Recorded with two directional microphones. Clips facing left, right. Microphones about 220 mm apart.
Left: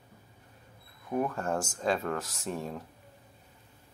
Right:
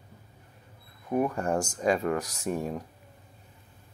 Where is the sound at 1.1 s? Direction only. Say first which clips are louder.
Right 4 dB; 15° right (ahead or behind).